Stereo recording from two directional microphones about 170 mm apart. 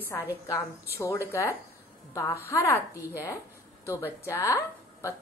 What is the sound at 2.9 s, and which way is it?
Speech, 10° right (ahead or behind).